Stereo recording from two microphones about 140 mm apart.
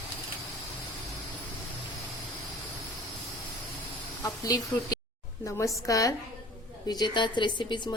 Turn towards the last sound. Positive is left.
turn(degrees=35)  # may be behind; listen again after turning